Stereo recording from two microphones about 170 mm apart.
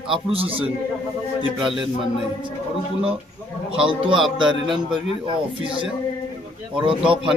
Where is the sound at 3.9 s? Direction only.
30° right (ahead or behind).